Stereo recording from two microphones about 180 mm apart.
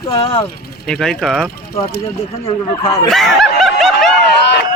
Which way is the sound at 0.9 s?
5° left (ahead or behind).